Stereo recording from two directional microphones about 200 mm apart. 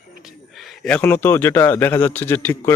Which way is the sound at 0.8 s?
5° left (ahead or behind).